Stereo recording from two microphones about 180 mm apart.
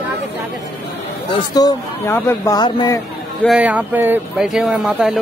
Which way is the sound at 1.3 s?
20° left (ahead or behind).